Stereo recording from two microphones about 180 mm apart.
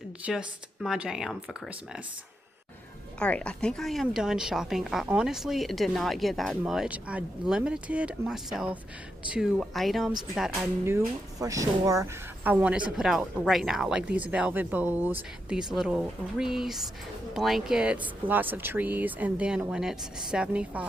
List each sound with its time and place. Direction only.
0.3 s a woman's voice: 5° right (ahead or behind)
3.2 s a woman's voice: 5° left (ahead or behind)
10.5 s a woman's voice: 15° right (ahead or behind)